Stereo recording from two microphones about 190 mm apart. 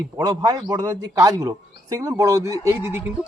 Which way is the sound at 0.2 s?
20° right (ahead or behind).